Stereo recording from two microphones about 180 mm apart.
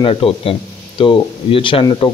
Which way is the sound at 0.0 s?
30° left (ahead or behind).